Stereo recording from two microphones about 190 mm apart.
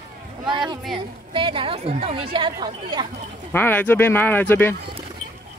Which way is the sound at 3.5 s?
10° left (ahead or behind).